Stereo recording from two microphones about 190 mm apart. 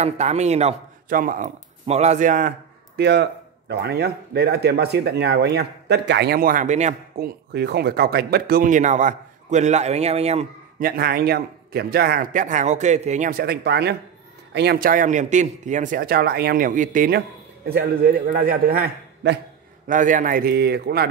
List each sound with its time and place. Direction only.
0.0 s a man's voice: 35° right (ahead or behind)
3.0 s a man's voice: 60° right (ahead or behind); by 7.2 s 40° right (ahead or behind)
7.5 s a man's voice: 60° right (ahead or behind); by 10.4 s 35° right (ahead or behind)
10.8 s a man's voice: 50° right (ahead or behind)
19.9 s a man's voice: 45° right (ahead or behind)